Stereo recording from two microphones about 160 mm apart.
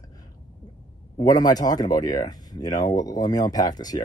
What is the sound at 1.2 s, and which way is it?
Speech, 25° left (ahead or behind).